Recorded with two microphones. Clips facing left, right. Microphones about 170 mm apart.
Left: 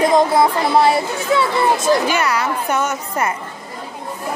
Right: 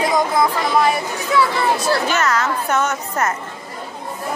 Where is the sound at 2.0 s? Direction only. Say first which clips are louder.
Left 1 dB; 10° left (ahead or behind).